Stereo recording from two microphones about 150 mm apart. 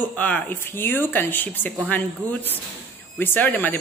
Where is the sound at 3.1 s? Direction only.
10° left (ahead or behind).